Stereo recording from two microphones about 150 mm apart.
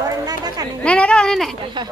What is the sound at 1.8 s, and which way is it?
Speech, 30° right (ahead or behind).